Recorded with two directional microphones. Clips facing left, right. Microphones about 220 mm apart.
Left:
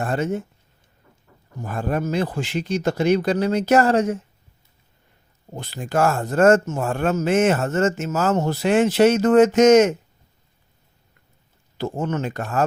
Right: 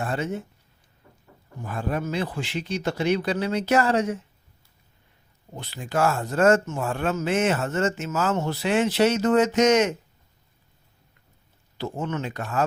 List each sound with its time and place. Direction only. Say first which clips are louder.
0.0 s speech: left 5 dB; 45° left (ahead or behind)
1.6 s speech: left 4 dB; 45° left (ahead or behind)
5.5 s speech: left 4 dB; 45° left (ahead or behind)
11.8 s speech: left 4 dB; 45° left (ahead or behind)